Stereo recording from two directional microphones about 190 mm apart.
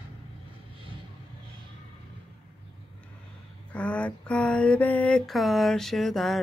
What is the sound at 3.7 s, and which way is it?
Mantra, 5° left (ahead or behind).